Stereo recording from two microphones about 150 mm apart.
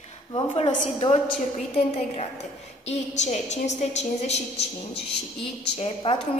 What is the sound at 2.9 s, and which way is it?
A woman's voice, 50° left (ahead or behind).